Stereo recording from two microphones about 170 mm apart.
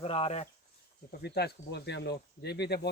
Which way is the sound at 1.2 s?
70° left (ahead or behind).